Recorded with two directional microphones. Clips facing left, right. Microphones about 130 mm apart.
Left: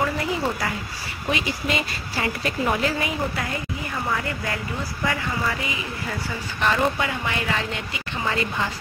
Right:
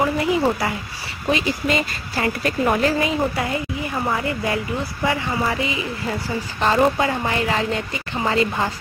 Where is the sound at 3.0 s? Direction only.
20° right (ahead or behind).